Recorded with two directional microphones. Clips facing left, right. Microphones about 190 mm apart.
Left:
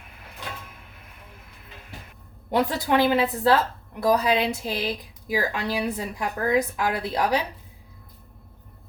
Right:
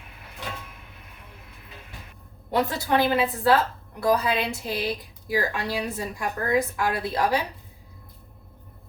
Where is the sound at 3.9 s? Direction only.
20° left (ahead or behind).